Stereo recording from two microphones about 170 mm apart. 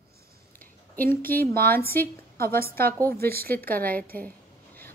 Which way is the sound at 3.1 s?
65° right (ahead or behind).